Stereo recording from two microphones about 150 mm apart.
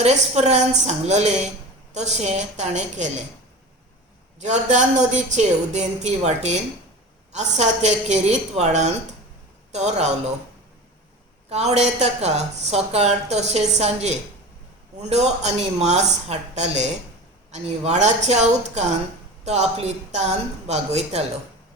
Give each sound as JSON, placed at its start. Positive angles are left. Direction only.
{"t": 0.0, "sound": "a woman's voice", "side_deg": -45}
{"t": 4.4, "sound": "a woman's voice", "side_deg": -50}
{"t": 11.4, "sound": "a woman's voice", "side_deg": -45}